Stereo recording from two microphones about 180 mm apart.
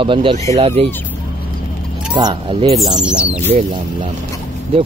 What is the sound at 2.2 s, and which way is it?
Speech, 25° right (ahead or behind).